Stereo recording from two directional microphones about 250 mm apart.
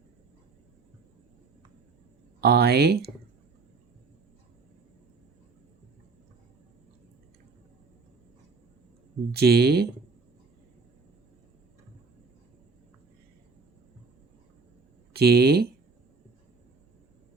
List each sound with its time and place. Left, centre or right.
2.4 s speech: right
9.3 s speech: right
15.1 s speech: right